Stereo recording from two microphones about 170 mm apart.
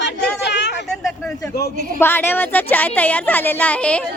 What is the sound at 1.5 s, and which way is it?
Speech, 65° left (ahead or behind).